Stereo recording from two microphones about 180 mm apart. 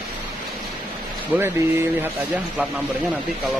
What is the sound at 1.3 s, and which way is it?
Speech, 15° right (ahead or behind).